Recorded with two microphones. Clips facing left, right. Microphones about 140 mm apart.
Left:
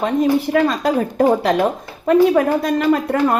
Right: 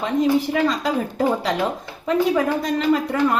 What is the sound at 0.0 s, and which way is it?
A woman's voice, 55° left (ahead or behind).